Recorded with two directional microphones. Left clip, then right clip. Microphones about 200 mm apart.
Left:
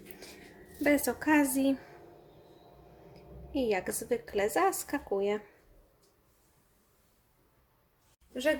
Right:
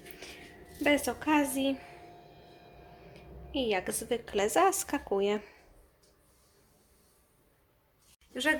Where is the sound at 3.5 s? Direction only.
10° left (ahead or behind); by 5.4 s 5° right (ahead or behind).